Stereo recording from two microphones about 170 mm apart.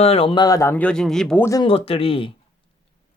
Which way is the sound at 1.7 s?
35° left (ahead or behind).